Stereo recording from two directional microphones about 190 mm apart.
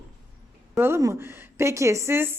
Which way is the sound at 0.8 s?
15° right (ahead or behind).